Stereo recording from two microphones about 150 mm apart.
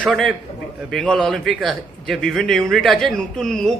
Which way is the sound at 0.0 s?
Centre (ahead or behind).